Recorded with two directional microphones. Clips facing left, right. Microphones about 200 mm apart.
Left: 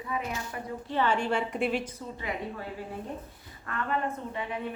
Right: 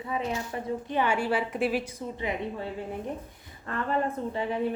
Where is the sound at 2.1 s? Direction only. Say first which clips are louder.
Right 3 dB; 20° right (ahead or behind).